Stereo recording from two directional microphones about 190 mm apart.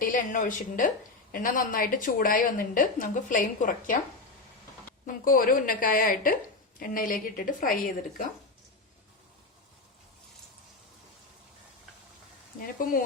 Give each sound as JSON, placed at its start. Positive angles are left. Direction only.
{"t": 0.0, "sound": "a woman's voice", "side_deg": 45}
{"t": 5.0, "sound": "a woman's voice", "side_deg": 45}